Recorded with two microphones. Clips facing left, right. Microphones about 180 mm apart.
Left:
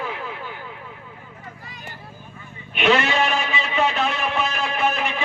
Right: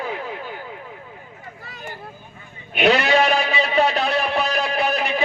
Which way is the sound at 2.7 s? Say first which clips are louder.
Right 3 dB; 40° right (ahead or behind).